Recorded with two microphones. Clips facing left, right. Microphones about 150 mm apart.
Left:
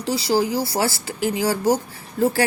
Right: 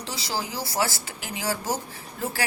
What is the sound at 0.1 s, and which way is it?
Speech, 30° left (ahead or behind).